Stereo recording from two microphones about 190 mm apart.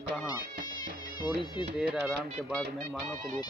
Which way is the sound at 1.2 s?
25° left (ahead or behind).